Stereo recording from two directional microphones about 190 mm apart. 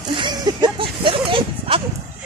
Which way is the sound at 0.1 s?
25° right (ahead or behind).